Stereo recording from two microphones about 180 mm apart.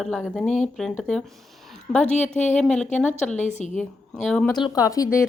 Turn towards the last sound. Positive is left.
turn(degrees=20)  # may be behind; listen again after turning